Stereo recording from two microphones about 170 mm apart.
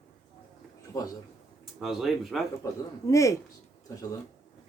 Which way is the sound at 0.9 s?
20° left (ahead or behind).